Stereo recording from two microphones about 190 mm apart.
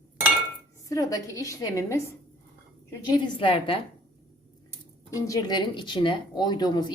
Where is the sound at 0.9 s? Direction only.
15° left (ahead or behind).